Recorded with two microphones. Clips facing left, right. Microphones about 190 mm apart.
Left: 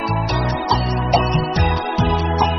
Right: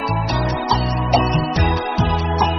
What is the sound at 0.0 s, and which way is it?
Music, centre (ahead or behind).